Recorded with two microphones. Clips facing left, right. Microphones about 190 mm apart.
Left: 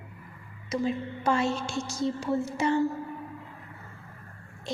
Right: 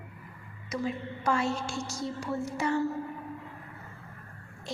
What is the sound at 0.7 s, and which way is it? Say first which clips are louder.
Speech: left 4 dB; 25° left (ahead or behind).